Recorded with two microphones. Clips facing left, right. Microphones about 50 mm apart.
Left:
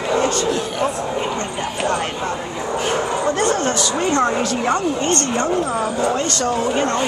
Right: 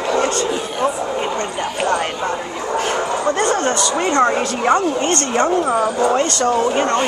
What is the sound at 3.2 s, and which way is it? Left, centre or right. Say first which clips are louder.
Speech: right 2 dB; centre.